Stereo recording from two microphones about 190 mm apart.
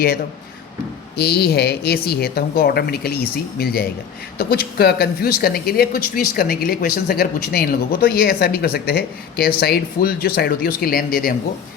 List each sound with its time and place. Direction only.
1.1 s a woman's voice: 60° left (ahead or behind)